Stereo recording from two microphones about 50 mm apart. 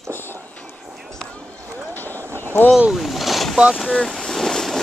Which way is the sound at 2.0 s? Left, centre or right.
Left.